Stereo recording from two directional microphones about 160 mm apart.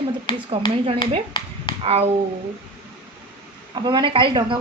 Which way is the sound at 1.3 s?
30° left (ahead or behind).